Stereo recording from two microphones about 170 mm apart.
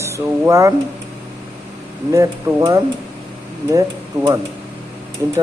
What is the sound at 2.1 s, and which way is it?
A man's voice, 20° right (ahead or behind).